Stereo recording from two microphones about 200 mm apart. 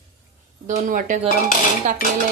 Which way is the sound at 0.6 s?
40° right (ahead or behind).